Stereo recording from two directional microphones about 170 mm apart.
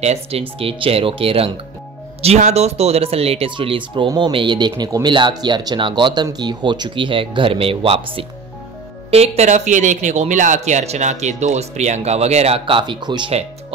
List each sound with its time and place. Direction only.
0.0 s speech: 35° right (ahead or behind)